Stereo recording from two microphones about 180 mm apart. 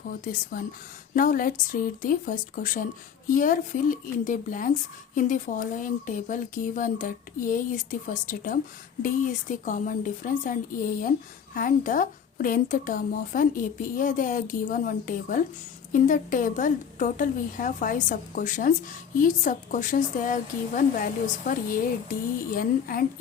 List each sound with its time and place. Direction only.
1.1 s a woman's voice: 50° left (ahead or behind)